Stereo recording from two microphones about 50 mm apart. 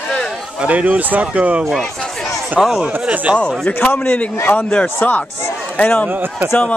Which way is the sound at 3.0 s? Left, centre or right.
Right.